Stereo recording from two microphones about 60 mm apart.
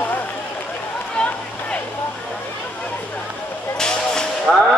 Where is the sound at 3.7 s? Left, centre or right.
Centre.